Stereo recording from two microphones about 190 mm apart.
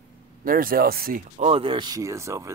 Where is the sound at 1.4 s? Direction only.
30° right (ahead or behind).